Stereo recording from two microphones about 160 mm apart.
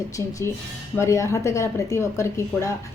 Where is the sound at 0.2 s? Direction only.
20° left (ahead or behind).